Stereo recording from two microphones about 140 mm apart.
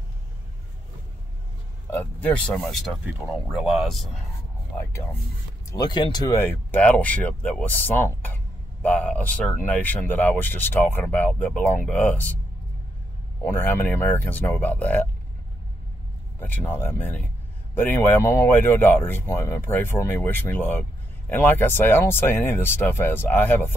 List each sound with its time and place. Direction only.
1.9 s speech: 15° left (ahead or behind)
5.7 s speech: 30° left (ahead or behind)
6.3 s speech: 15° left (ahead or behind)
13.4 s speech: 15° left (ahead or behind)
16.3 s speech: 15° left (ahead or behind)